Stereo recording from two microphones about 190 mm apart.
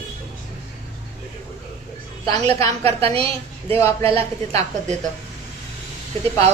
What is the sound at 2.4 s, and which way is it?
Speech, 30° right (ahead or behind).